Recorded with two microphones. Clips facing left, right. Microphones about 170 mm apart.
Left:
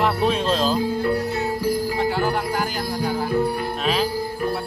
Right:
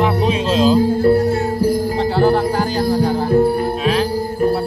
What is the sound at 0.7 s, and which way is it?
Music, 45° right (ahead or behind).